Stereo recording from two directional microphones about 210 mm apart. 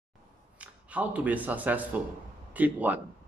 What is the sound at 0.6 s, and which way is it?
Speech, 5° right (ahead or behind).